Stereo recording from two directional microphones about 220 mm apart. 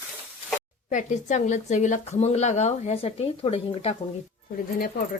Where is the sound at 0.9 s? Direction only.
35° left (ahead or behind).